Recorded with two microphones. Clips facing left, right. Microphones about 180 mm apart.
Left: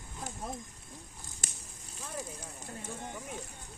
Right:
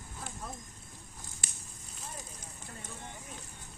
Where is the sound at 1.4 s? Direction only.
45° left (ahead or behind).